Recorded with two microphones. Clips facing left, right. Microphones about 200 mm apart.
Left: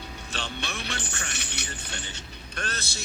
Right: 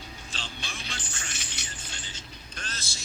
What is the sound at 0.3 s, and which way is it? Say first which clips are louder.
Music: left 8 dB; 70° left (ahead or behind).